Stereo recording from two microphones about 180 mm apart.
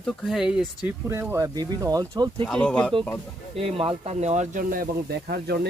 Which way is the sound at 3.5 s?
30° right (ahead or behind).